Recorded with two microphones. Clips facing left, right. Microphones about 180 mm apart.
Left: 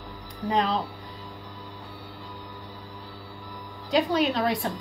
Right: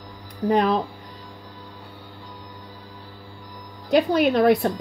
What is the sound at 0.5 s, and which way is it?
Speech, 55° right (ahead or behind).